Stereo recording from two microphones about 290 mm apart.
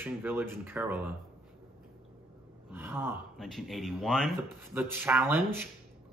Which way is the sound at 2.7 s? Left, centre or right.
Centre.